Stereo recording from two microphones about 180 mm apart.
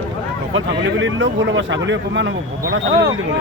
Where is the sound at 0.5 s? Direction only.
90° right.